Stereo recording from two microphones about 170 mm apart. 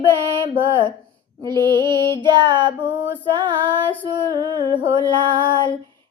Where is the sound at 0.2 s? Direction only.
30° right (ahead or behind).